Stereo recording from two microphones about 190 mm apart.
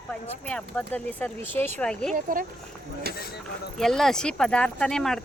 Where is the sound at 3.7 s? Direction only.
Centre (ahead or behind).